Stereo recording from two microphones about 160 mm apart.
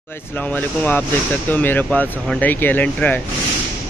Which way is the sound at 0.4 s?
10° left (ahead or behind).